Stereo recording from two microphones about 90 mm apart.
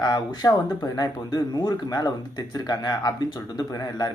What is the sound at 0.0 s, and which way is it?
Speech, 45° left (ahead or behind).